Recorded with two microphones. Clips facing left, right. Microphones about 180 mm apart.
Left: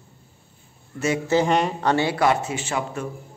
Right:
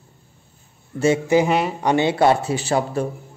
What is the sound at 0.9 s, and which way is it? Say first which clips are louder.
Speech: right 6 dB; 30° right (ahead or behind).